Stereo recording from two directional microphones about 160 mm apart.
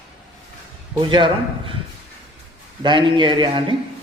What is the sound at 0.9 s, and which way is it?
Speech, 30° right (ahead or behind).